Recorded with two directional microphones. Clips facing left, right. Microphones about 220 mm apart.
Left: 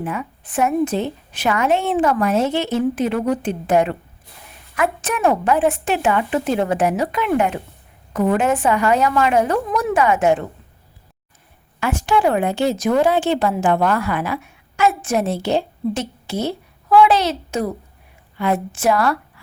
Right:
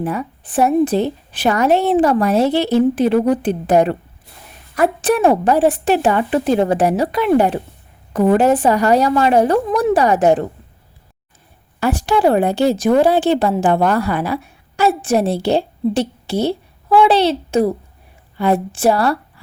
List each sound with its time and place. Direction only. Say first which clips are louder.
0.0 s a woman's voice: right 4 dB; 35° right (ahead or behind)
11.8 s a woman's voice: right 3 dB; 35° right (ahead or behind)